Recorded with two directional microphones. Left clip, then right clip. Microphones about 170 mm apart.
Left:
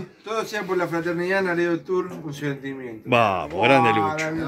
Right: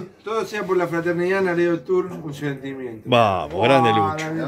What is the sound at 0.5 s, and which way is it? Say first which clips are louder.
A man's voice: right 3 dB; 5° left (ahead or behind).